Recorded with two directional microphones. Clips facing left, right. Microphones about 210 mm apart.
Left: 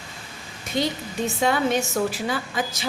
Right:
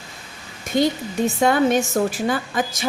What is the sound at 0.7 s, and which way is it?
A woman's voice, 45° right (ahead or behind).